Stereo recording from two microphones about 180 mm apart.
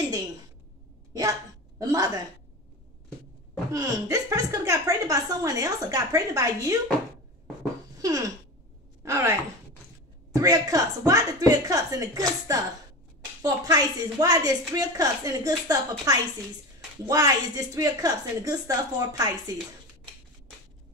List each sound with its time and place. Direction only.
1.8 s a woman's voice: 20° right (ahead or behind)
3.7 s a woman's voice: 20° right (ahead or behind)
8.0 s a sound: 20° right (ahead or behind)
9.0 s speech: 15° right (ahead or behind)
10.3 s a woman's voice: 20° right (ahead or behind)